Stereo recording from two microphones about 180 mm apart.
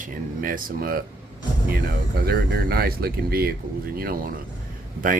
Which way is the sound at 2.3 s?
60° right (ahead or behind).